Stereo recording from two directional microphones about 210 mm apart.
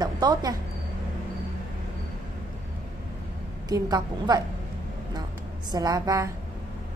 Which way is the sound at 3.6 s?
20° right (ahead or behind).